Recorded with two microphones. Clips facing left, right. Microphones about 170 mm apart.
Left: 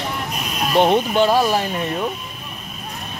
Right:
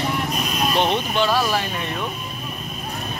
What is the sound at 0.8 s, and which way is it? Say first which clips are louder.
Speech: left 7 dB; 45° left (ahead or behind).